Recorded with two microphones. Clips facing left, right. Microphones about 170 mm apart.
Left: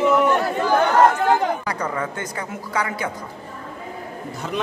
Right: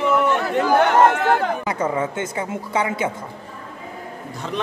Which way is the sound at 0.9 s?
70° right (ahead or behind).